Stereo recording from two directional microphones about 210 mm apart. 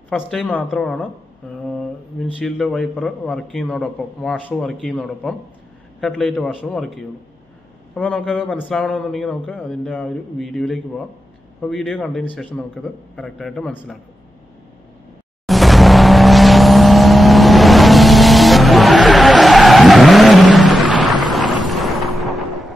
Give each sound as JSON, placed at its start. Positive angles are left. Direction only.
{"t": 0.1, "sound": "speech", "side_deg": 5}
{"t": 15.4, "sound": "vehicle", "side_deg": 0}